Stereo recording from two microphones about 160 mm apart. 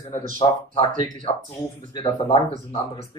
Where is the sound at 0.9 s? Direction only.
55° right (ahead or behind).